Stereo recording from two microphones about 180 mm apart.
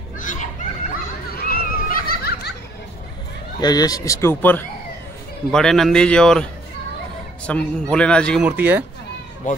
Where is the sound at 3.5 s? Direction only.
20° left (ahead or behind); by 8.5 s 5° left (ahead or behind).